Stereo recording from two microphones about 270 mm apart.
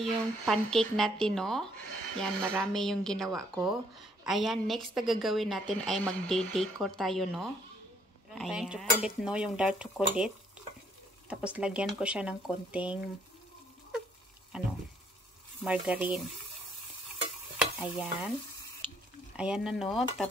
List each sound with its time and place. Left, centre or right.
0.0 s a woman's voice: centre
14.5 s a sound: centre
15.6 s a woman's voice: centre
17.6 s stir: centre
19.3 s a woman's voice: centre